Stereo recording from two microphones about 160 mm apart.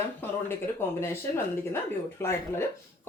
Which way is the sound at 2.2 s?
15° left (ahead or behind).